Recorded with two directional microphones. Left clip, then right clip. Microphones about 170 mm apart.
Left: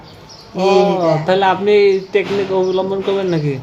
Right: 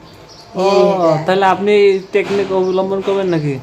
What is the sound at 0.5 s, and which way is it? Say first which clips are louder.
Speech: right 1 dB; 20° right (ahead or behind).